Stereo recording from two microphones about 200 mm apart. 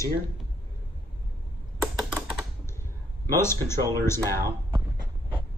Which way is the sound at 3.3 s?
15° left (ahead or behind).